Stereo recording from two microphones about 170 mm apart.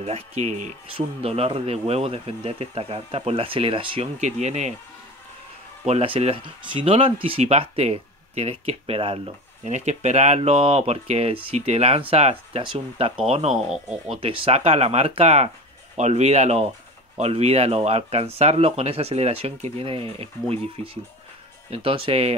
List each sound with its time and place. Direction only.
0.0 s speech: 40° right (ahead or behind)
5.9 s speech: 35° right (ahead or behind)
13.7 s speech: 5° right (ahead or behind)
14.2 s speech: 35° right (ahead or behind)